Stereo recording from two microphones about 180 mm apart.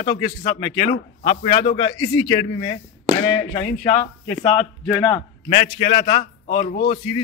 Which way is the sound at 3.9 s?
40° left (ahead or behind).